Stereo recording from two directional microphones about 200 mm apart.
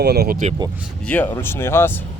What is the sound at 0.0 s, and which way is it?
Speech, 55° right (ahead or behind).